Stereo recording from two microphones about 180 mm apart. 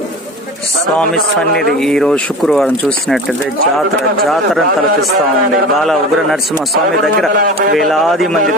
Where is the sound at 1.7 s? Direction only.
5° left (ahead or behind).